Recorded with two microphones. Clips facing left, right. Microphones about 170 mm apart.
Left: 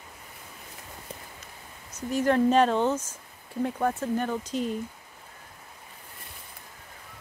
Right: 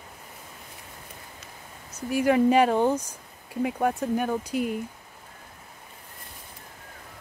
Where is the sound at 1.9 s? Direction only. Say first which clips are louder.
Right 2 dB; 10° right (ahead or behind).